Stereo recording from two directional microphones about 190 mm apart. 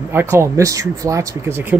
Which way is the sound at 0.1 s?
15° right (ahead or behind).